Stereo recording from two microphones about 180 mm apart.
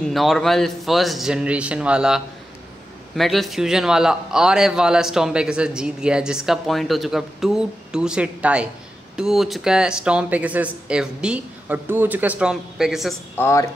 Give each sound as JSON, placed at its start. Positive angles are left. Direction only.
{"t": 0.0, "sound": "a man's voice", "side_deg": 0}
{"t": 13.4, "sound": "speech", "side_deg": 15}